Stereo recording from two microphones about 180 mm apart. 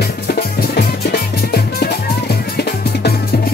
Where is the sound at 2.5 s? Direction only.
60° left (ahead or behind).